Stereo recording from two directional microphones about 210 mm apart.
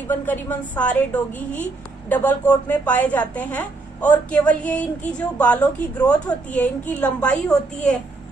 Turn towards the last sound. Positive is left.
turn(degrees=5)  # may be behind; listen again after turning